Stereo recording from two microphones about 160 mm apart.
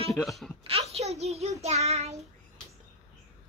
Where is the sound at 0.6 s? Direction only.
40° right (ahead or behind).